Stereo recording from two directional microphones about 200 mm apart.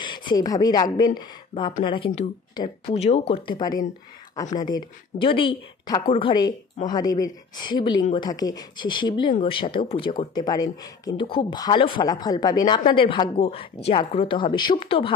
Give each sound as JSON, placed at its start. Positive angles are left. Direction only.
{"t": 0.0, "sound": "speech", "side_deg": 20}
{"t": 3.0, "sound": "speech", "side_deg": 30}